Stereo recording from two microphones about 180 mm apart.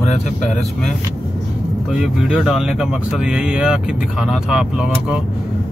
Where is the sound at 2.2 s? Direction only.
5° right (ahead or behind).